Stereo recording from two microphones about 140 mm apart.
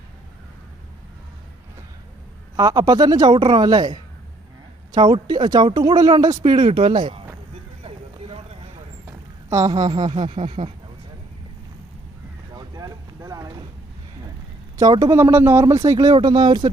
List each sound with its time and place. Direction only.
2.6 s speech: 25° right (ahead or behind)
7.9 s a sound: 45° right (ahead or behind)
9.0 s a sound: 25° right (ahead or behind)
10.1 s speech: 35° right (ahead or behind)
12.5 s vehicle: 25° right (ahead or behind)
14.8 s speech: 25° right (ahead or behind)